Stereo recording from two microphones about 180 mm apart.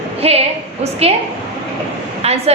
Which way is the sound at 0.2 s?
35° right (ahead or behind).